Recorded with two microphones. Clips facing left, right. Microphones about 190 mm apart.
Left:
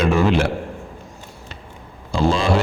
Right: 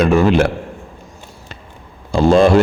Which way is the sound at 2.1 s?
55° right (ahead or behind).